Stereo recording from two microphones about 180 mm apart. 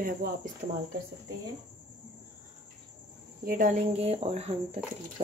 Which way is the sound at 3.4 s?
45° right (ahead or behind).